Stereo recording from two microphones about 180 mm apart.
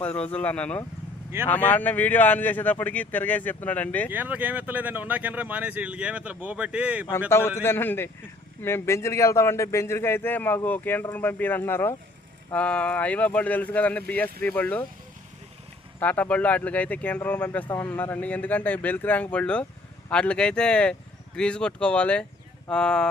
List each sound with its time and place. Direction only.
0.0 s speech: 10° left (ahead or behind)
4.1 s speech: 10° right (ahead or behind)
7.3 s speech: 15° left (ahead or behind)
16.0 s speech: 10° left (ahead or behind)